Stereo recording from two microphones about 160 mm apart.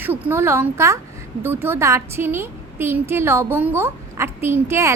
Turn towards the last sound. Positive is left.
turn(degrees=-15)  # may be behind; listen again after turning